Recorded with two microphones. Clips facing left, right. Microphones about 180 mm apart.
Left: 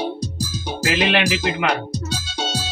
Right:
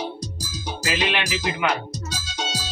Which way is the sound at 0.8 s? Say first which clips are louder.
Left 6 dB; 65° left (ahead or behind).